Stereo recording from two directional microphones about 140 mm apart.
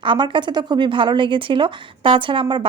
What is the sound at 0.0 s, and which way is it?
A woman's voice, 35° right (ahead or behind).